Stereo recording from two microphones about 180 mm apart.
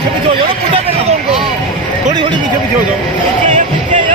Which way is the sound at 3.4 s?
45° right (ahead or behind).